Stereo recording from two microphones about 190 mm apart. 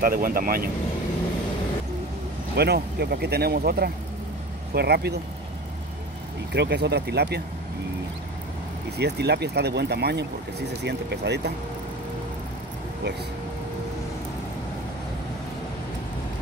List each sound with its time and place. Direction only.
0.0 s speech: 50° right (ahead or behind)
2.5 s speech: 60° right (ahead or behind)
6.5 s speech: 65° right (ahead or behind)
8.9 s speech: 60° right (ahead or behind)